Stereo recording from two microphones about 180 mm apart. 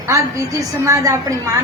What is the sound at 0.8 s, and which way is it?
Speech, 15° right (ahead or behind).